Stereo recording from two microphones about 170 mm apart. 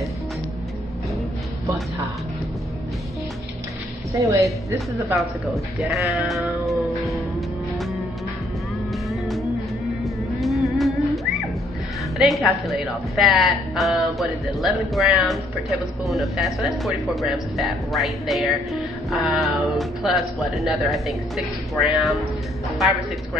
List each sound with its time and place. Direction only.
4.1 s a woman's voice: 20° right (ahead or behind)
5.1 s speech: centre (ahead or behind)
7.0 s music: centre (ahead or behind)
9.1 s music: centre (ahead or behind)
12.2 s speech: centre (ahead or behind)